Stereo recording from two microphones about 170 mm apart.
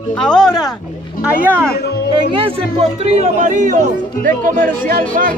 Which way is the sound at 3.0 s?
45° right (ahead or behind).